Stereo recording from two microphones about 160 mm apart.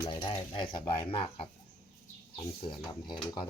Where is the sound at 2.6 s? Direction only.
30° left (ahead or behind).